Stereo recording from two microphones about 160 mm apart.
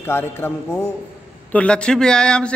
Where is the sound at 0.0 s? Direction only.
15° left (ahead or behind).